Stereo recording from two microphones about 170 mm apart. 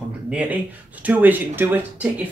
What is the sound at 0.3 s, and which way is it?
Speech, 10° right (ahead or behind).